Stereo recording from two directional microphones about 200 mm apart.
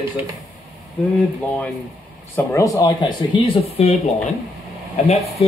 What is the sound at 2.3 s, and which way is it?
Speech, 15° left (ahead or behind).